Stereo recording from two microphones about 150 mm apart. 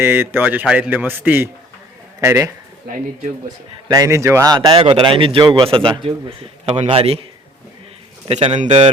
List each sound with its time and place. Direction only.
0.0 s a man's voice: 15° right (ahead or behind)
3.8 s speech: 25° right (ahead or behind)
8.3 s a man's voice: 45° right (ahead or behind)